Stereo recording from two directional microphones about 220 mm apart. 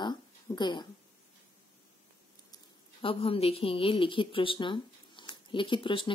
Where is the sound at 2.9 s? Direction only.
25° left (ahead or behind).